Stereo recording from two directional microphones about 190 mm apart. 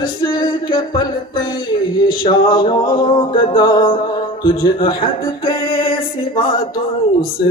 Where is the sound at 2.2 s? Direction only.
25° left (ahead or behind).